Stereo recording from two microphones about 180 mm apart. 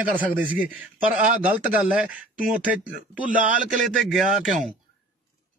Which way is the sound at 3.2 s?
45° right (ahead or behind).